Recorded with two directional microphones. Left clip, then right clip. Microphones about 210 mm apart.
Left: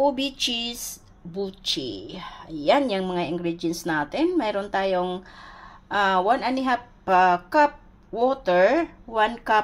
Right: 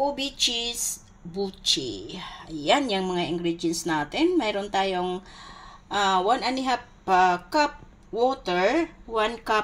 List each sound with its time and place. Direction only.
0.0 s a woman's voice: 10° left (ahead or behind)